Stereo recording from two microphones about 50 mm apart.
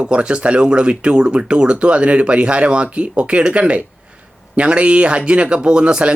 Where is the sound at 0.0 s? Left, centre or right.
Right.